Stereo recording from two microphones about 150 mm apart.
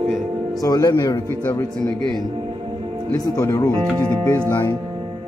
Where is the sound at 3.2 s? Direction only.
20° left (ahead or behind).